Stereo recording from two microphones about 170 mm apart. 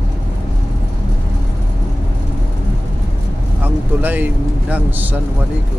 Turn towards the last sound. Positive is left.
turn(degrees=-10)  # may be behind; listen again after turning